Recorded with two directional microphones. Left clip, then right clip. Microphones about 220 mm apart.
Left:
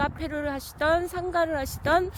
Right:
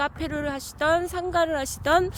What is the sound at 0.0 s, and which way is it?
Speech, 5° right (ahead or behind).